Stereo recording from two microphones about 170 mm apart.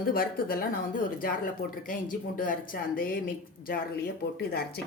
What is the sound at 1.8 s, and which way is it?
Speech, 55° left (ahead or behind).